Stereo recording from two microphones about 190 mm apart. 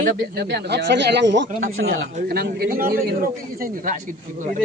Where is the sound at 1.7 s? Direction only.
90° right.